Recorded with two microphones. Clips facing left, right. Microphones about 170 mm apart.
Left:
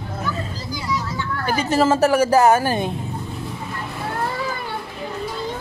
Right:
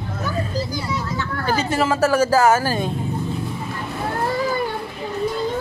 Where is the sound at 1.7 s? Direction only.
35° left (ahead or behind).